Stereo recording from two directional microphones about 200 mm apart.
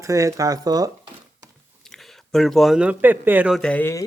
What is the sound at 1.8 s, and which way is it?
Speech, centre (ahead or behind).